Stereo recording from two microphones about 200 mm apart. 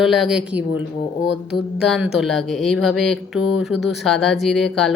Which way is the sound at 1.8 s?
Centre (ahead or behind).